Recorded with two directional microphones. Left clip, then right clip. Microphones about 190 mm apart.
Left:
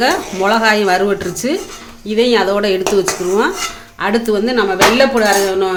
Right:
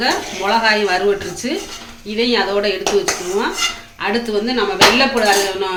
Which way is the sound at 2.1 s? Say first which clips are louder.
Left 4 dB; 55° left (ahead or behind).